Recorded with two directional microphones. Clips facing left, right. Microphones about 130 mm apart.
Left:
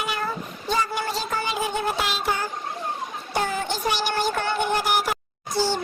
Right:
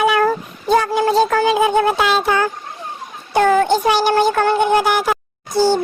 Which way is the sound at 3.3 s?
70° right (ahead or behind).